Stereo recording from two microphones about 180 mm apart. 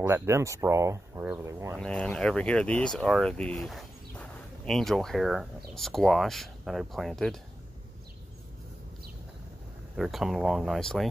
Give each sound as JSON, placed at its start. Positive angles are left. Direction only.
{"t": 0.0, "sound": "speech", "side_deg": -15}
{"t": 1.8, "sound": "speech", "side_deg": 5}
{"t": 9.9, "sound": "speech", "side_deg": 0}